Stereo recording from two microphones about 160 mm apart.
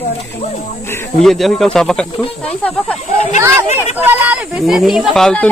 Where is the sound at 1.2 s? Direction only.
Centre (ahead or behind).